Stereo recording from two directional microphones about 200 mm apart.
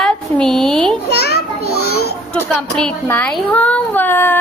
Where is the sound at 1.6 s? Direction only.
90° left.